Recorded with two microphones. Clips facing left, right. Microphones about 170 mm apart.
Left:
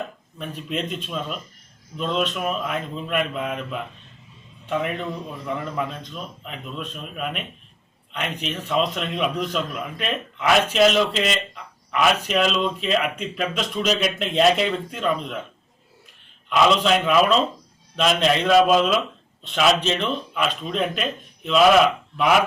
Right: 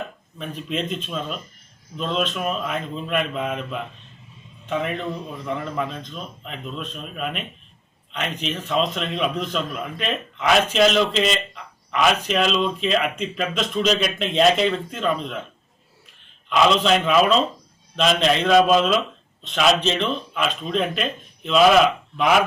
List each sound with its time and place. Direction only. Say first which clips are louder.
0.3 s a man's voice: right 1 dB; 5° left (ahead or behind)
16.5 s a man's voice: even; 5° left (ahead or behind)